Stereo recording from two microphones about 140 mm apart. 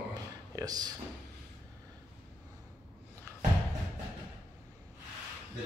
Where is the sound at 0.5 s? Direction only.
25° right (ahead or behind).